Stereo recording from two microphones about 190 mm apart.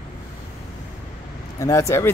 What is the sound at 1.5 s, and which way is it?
Speech, 15° left (ahead or behind).